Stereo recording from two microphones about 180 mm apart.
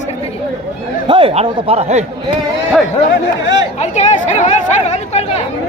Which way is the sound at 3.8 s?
40° left (ahead or behind).